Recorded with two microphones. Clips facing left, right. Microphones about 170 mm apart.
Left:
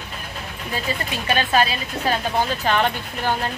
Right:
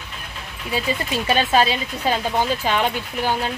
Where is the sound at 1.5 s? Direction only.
25° right (ahead or behind).